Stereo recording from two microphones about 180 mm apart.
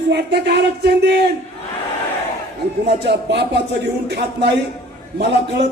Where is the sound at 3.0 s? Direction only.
65° right (ahead or behind).